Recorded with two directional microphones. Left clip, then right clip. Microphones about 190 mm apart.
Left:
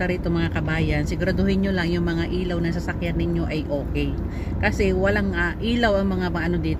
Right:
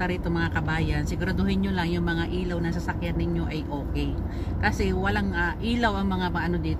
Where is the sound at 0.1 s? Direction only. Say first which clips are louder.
Left 3 dB; 45° right (ahead or behind).